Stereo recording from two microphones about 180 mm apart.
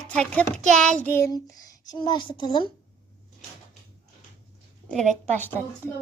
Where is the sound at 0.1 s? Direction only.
5° left (ahead or behind); by 2.6 s 25° left (ahead or behind).